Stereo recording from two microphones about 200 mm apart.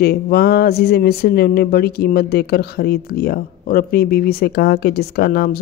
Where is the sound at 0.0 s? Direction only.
50° left (ahead or behind).